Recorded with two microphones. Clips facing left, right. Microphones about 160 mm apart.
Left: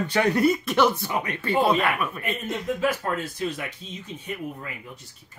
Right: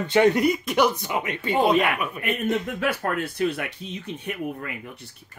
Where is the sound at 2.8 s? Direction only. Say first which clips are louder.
Even; 65° right (ahead or behind).